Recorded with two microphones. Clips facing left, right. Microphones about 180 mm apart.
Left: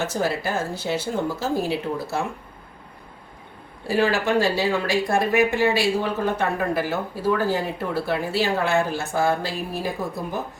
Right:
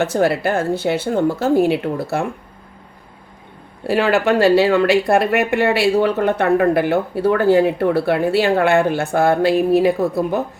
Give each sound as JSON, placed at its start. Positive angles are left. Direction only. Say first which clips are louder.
{"t": 0.0, "sound": "speech", "louder": "right 8 dB", "side_deg": -60}
{"t": 3.8, "sound": "speech", "louder": "right 5 dB", "side_deg": -65}